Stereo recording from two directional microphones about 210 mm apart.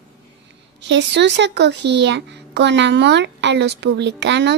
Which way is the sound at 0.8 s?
55° right (ahead or behind).